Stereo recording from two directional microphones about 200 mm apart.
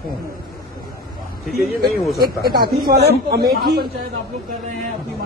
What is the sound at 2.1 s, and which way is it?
A man's voice, 50° right (ahead or behind).